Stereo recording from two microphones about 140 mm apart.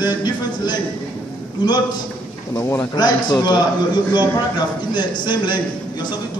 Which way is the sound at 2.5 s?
20° left (ahead or behind).